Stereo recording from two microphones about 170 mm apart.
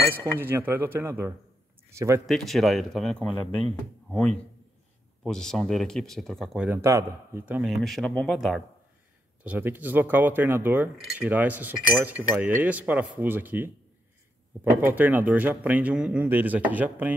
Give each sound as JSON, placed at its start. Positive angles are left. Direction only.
{"t": 0.1, "sound": "speech", "side_deg": -10}
{"t": 2.2, "sound": "a man's voice", "side_deg": 0}
{"t": 5.2, "sound": "a man's voice", "side_deg": 5}
{"t": 6.8, "sound": "a man's voice", "side_deg": -15}